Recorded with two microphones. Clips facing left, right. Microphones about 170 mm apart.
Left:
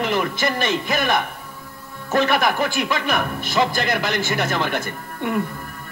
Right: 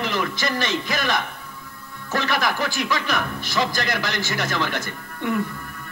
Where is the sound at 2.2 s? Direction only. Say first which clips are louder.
Left 4 dB; 55° left (ahead or behind).